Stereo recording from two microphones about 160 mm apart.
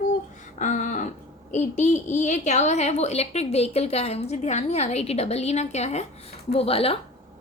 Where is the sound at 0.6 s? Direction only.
50° left (ahead or behind).